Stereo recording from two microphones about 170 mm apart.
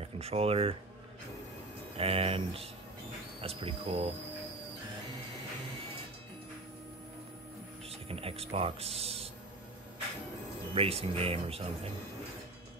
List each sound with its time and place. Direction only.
0.0 s speech: 35° right (ahead or behind)
2.0 s speech: 35° right (ahead or behind)
8.1 s speech: 35° right (ahead or behind)
10.7 s speech: 35° right (ahead or behind)